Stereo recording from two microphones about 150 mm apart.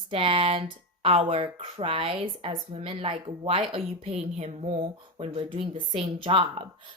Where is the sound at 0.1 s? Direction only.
35° right (ahead or behind).